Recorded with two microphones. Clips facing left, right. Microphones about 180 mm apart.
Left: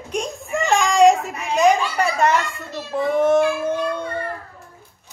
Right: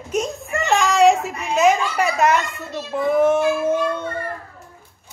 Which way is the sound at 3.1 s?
5° right (ahead or behind).